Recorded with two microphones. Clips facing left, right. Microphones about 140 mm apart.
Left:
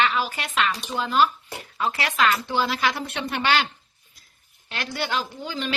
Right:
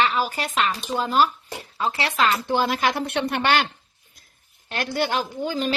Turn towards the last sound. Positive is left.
turn(degrees=-45)  # may be behind; listen again after turning